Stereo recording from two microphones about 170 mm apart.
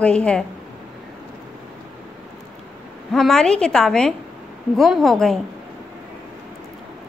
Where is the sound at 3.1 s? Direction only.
Centre (ahead or behind).